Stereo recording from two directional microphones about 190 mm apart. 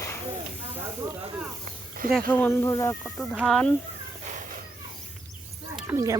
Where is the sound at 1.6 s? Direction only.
45° right (ahead or behind).